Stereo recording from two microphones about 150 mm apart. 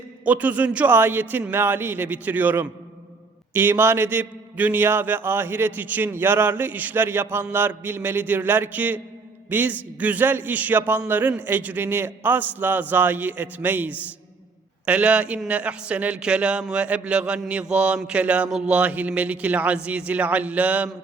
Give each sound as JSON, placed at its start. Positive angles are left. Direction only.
{"t": 0.3, "sound": "a man's voice", "side_deg": -10}